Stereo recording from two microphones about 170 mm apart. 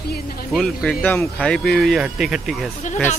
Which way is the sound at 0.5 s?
5° left (ahead or behind).